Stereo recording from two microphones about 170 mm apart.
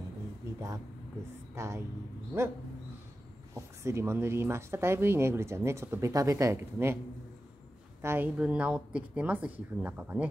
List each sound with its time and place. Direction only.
1.5 s speech: 15° right (ahead or behind)
3.5 s speech: 15° right (ahead or behind)
8.0 s speech: 15° right (ahead or behind)